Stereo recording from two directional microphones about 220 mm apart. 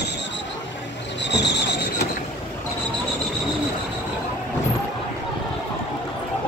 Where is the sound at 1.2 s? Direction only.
50° left (ahead or behind).